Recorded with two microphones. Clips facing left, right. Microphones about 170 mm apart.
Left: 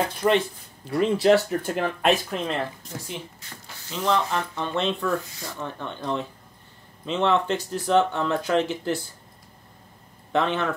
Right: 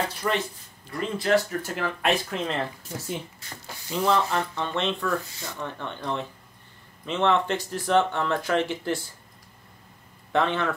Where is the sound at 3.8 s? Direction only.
10° right (ahead or behind).